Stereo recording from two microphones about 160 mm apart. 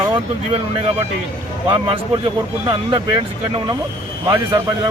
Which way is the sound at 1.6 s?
35° right (ahead or behind).